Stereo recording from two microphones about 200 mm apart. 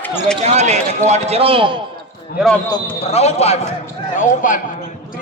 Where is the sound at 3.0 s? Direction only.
30° left (ahead or behind).